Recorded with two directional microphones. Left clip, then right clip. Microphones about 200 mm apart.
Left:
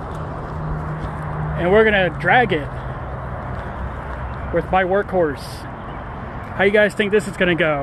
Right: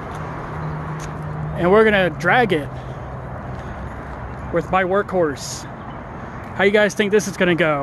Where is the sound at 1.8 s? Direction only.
90° right.